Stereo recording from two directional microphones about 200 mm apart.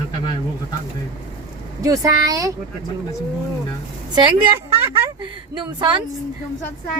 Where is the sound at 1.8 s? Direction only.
15° right (ahead or behind).